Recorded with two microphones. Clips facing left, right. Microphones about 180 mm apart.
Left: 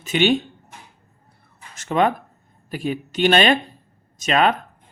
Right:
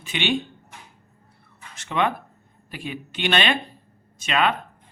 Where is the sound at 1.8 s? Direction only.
40° left (ahead or behind).